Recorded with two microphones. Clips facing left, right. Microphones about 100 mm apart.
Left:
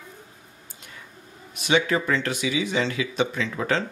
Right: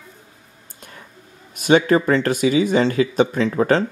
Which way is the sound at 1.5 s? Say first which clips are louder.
Right 7 dB; 45° right (ahead or behind).